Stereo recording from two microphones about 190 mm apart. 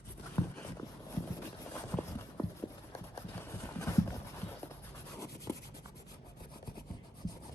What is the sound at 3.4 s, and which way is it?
Clip-clop, 15° left (ahead or behind).